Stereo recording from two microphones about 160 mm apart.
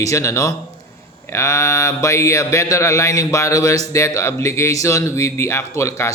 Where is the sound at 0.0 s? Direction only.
20° left (ahead or behind).